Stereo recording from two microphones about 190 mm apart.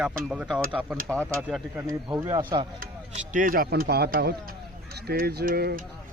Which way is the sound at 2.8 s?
40° right (ahead or behind).